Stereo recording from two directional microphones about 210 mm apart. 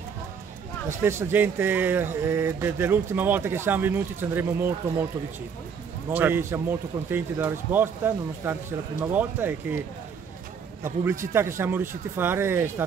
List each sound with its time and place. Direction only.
1.0 s speech: 10° right (ahead or behind)
6.1 s speech: 10° right (ahead or behind)
10.8 s speech: 10° right (ahead or behind)